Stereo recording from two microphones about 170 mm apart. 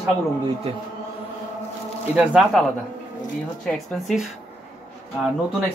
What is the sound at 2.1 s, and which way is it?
Speech, 5° right (ahead or behind).